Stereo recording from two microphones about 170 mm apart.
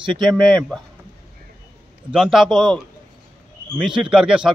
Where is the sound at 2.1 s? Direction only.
Centre (ahead or behind).